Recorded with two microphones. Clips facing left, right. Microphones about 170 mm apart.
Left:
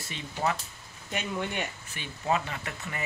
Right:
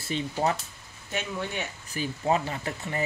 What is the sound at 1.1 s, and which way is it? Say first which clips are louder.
Speech: even; 15° left (ahead or behind).